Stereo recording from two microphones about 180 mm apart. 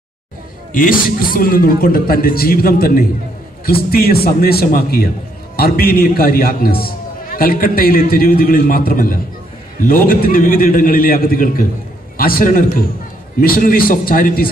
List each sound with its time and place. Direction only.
0.7 s a man's voice: 50° left (ahead or behind)